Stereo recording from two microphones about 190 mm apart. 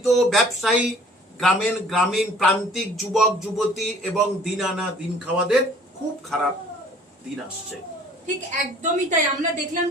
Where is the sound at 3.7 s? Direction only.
Centre (ahead or behind).